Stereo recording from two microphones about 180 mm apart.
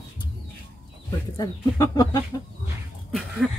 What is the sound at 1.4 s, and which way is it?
Speech, 20° left (ahead or behind).